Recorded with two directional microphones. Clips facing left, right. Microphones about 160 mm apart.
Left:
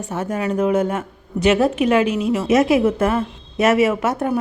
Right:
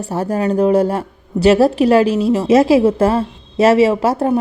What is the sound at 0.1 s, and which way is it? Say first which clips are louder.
Speech: right 5 dB; 35° right (ahead or behind).